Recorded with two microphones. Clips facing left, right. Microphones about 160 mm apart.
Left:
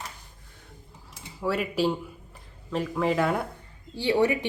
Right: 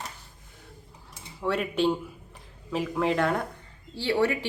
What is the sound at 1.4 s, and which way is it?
Speech, 5° left (ahead or behind).